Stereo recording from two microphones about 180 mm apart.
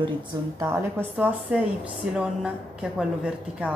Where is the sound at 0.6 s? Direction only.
15° right (ahead or behind).